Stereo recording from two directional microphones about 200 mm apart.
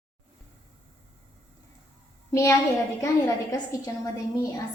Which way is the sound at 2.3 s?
15° left (ahead or behind).